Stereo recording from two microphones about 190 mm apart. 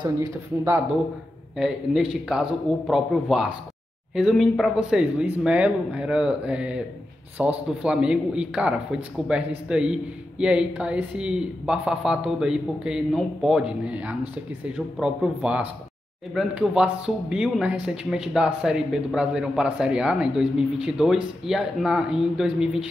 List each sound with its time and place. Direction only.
0.0 s a man's voice: 15° right (ahead or behind)
1.6 s a man's voice: centre (ahead or behind)